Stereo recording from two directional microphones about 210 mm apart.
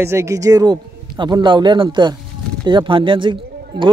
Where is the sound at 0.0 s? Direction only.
10° right (ahead or behind).